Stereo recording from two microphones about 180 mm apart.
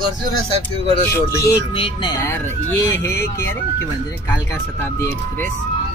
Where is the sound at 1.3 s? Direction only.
20° left (ahead or behind).